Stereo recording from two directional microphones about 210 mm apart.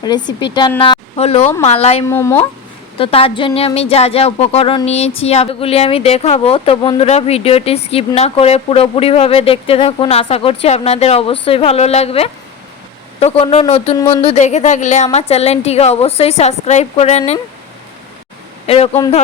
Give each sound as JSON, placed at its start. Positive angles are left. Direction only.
{"t": 0.0, "sound": "speech", "side_deg": 20}
{"t": 2.0, "sound": "speech", "side_deg": 10}
{"t": 3.0, "sound": "a woman's voice", "side_deg": 25}
{"t": 18.6, "sound": "speech", "side_deg": 30}